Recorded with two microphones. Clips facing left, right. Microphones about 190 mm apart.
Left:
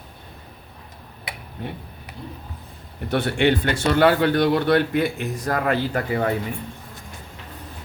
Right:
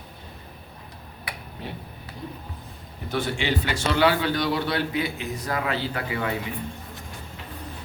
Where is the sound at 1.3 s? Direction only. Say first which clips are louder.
Left 1 dB; 25° left (ahead or behind).